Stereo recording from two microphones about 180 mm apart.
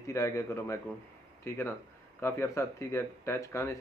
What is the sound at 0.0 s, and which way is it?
Speech, 15° left (ahead or behind).